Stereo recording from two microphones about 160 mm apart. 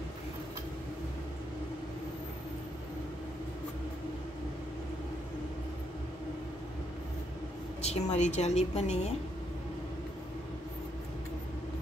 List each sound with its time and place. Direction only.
7.8 s a woman's voice: 45° left (ahead or behind)